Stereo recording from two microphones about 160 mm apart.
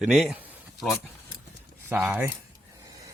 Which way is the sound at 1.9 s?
10° right (ahead or behind).